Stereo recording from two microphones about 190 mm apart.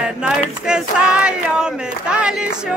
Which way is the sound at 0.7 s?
5° right (ahead or behind).